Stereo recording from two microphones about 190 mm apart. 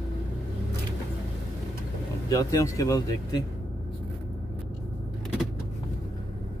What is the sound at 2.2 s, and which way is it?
Speech, 15° left (ahead or behind).